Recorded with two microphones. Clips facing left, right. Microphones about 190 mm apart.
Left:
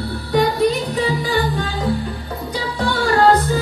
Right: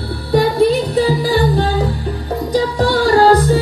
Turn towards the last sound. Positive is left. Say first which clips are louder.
# right 4 dB
turn(degrees=-35)  # may be behind; listen again after turning